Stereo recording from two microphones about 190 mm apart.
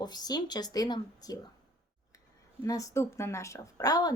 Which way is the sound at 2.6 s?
15° left (ahead or behind).